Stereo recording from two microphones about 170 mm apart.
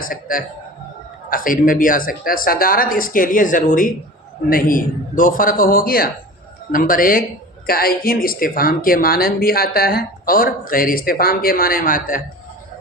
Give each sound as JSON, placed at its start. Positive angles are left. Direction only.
{"t": 0.0, "sound": "a man's voice", "side_deg": 55}